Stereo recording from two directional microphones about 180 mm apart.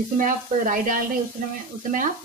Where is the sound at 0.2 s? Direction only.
50° right (ahead or behind).